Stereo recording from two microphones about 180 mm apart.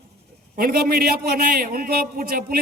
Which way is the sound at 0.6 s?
55° right (ahead or behind).